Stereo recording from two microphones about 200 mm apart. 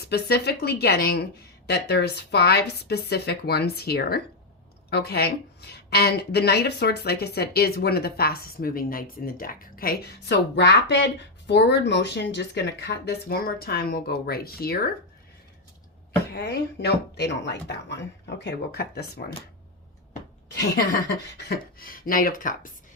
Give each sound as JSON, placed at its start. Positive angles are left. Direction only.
{"t": 0.1, "sound": "speech", "side_deg": 55}
{"t": 16.3, "sound": "speech", "side_deg": 55}
{"t": 21.3, "sound": "speech", "side_deg": 50}